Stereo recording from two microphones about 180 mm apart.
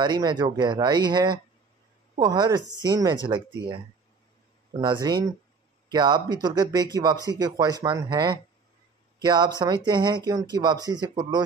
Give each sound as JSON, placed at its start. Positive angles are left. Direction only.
{"t": 0.0, "sound": "speech", "side_deg": -25}
{"t": 4.7, "sound": "speech", "side_deg": -25}